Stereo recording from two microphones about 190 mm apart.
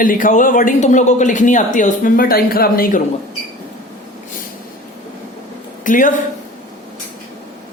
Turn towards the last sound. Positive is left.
turn(degrees=45)  # may be behind; listen again after turning